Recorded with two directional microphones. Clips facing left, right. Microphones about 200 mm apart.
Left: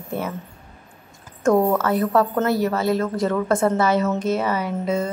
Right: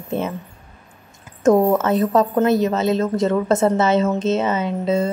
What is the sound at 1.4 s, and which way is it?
A woman's voice, 20° right (ahead or behind).